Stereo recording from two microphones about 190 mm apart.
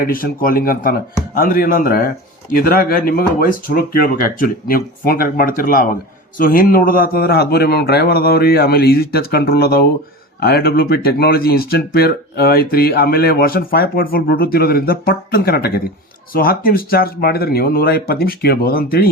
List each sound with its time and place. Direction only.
0.0 s speech: 50° left (ahead or behind)